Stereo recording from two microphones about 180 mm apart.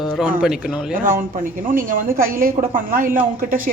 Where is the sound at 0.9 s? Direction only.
50° right (ahead or behind).